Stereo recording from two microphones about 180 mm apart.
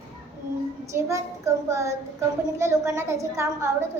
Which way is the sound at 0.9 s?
15° right (ahead or behind).